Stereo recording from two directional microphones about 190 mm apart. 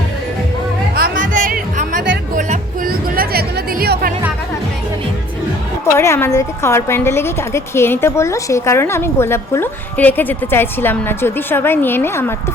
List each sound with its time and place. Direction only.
0.9 s music: 50° right (ahead or behind)
5.8 s a woman's voice: 15° left (ahead or behind)